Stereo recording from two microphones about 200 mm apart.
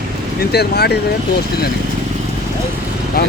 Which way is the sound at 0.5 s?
55° left (ahead or behind).